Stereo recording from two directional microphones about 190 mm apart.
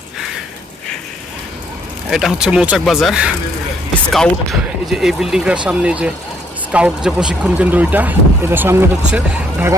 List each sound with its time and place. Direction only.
2.0 s speech: centre (ahead or behind)